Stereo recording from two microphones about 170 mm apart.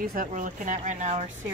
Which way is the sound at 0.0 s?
55° right (ahead or behind).